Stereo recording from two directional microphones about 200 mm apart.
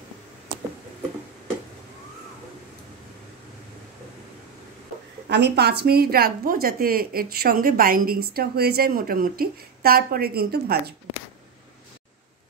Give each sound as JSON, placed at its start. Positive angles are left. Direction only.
{"t": 5.3, "sound": "a woman's voice", "side_deg": -55}